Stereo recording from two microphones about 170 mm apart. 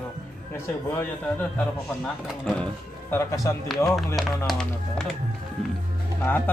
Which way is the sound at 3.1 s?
20° left (ahead or behind).